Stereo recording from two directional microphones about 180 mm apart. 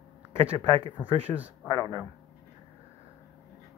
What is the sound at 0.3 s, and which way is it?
Speech, 30° right (ahead or behind).